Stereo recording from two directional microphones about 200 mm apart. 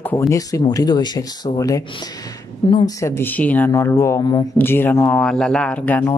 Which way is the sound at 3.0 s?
10° left (ahead or behind).